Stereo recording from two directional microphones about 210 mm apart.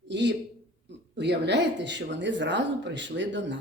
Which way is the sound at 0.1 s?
60° right (ahead or behind).